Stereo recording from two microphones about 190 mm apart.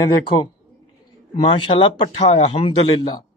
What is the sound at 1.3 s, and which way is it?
Speech, 25° left (ahead or behind).